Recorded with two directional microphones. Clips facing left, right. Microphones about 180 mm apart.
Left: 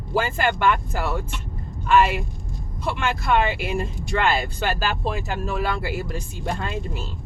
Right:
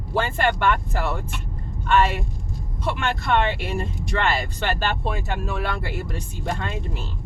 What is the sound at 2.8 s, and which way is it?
Speech, centre (ahead or behind).